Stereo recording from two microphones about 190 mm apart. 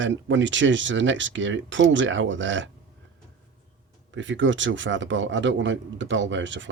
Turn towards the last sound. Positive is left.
turn(degrees=-75)  # may be behind; listen again after turning